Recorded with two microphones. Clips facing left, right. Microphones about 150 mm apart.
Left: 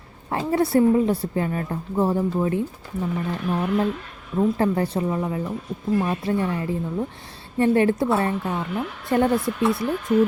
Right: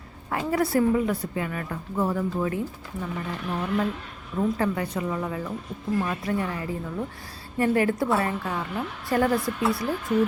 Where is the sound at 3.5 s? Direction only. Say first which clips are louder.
Left 4 dB; 15° left (ahead or behind).